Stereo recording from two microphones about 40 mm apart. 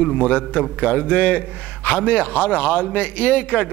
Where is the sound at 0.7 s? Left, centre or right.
Left.